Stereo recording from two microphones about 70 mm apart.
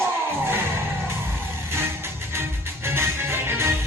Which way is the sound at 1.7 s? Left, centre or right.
Right.